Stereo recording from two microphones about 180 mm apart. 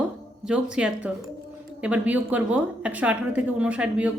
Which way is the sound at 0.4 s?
5° right (ahead or behind).